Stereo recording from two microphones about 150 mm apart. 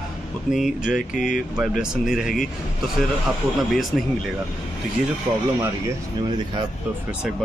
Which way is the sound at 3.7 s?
Centre (ahead or behind).